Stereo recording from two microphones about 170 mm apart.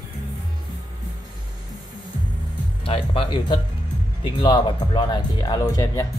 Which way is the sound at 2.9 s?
30° left (ahead or behind).